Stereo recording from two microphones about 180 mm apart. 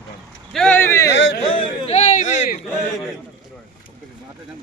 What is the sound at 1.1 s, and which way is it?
Speech, 75° left (ahead or behind).